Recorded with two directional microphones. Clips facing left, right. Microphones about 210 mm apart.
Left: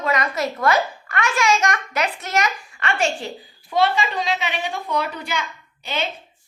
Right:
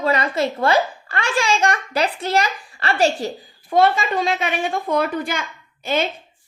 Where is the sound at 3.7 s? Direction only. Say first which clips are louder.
Right 3 dB; 50° right (ahead or behind).